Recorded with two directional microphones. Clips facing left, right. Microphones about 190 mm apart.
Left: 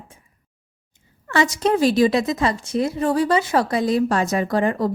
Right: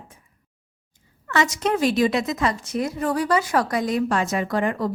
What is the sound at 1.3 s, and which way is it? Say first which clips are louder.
A woman's voice: left 3 dB; 30° left (ahead or behind).